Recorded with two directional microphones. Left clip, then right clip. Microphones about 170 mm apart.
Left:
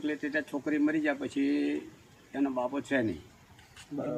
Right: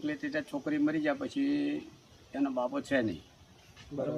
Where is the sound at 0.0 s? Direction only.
10° right (ahead or behind).